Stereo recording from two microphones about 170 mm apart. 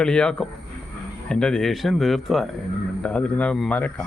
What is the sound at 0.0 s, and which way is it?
Speech, 5° left (ahead or behind).